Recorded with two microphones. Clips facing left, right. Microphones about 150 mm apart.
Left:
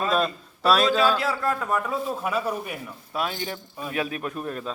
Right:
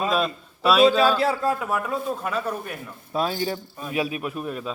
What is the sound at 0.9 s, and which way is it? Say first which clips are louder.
Speech: right 2 dB; 30° right (ahead or behind).